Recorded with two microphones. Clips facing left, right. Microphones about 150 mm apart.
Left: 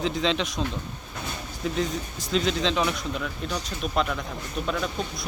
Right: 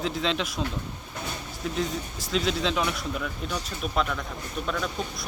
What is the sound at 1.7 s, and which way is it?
Speech, centre (ahead or behind).